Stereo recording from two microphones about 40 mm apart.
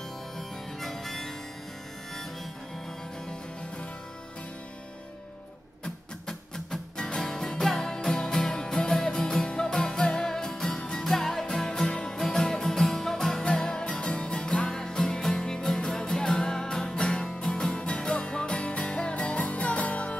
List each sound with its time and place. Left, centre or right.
0.4 s harmonica: centre
6.2 s music: centre; by 20.2 s left